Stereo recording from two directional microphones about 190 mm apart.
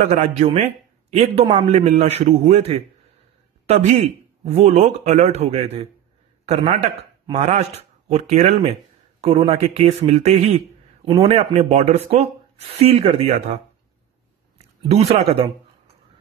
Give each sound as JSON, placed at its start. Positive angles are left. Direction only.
{"t": 0.1, "sound": "a man's voice", "side_deg": -35}
{"t": 14.9, "sound": "a man's voice", "side_deg": -35}